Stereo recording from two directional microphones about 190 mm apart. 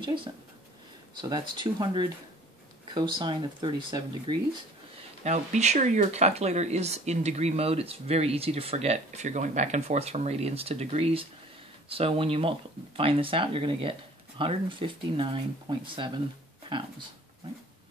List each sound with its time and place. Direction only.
0.0 s speech: 25° right (ahead or behind)
5.2 s speech: 35° right (ahead or behind)